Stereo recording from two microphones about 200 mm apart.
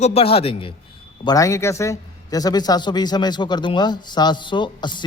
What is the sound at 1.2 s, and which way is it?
Speech, 15° left (ahead or behind).